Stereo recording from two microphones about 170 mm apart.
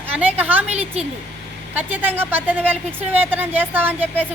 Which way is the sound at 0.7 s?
40° right (ahead or behind).